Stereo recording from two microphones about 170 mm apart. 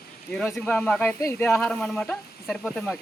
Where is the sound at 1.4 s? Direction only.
5° left (ahead or behind).